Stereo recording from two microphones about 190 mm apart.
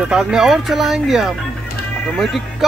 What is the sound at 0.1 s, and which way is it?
Speech, 5° right (ahead or behind).